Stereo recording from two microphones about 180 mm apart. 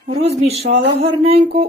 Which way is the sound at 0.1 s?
35° right (ahead or behind).